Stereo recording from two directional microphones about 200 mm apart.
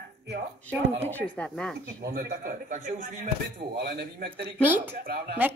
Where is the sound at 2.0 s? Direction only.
50° right (ahead or behind).